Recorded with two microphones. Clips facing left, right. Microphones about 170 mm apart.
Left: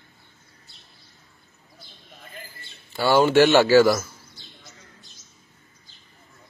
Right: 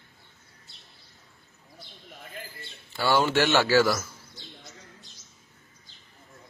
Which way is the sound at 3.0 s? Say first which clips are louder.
Left 5 dB; 45° left (ahead or behind).